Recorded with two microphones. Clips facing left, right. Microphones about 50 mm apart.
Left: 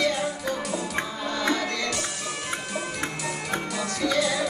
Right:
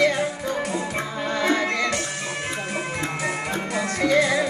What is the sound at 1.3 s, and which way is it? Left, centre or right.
Music, right.